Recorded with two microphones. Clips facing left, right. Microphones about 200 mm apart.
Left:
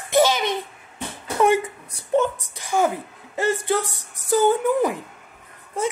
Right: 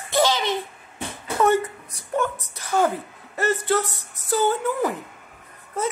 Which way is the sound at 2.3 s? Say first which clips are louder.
Even; 10° left (ahead or behind).